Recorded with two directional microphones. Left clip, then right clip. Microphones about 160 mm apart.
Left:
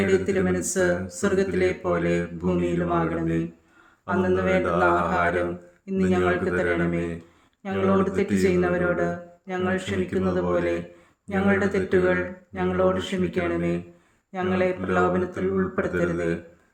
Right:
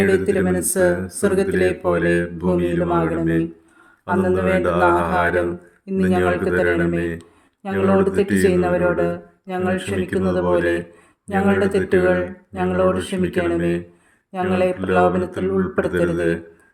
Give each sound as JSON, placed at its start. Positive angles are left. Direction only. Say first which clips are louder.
{"t": 0.0, "sound": "speech", "louder": "right 5 dB", "side_deg": -30}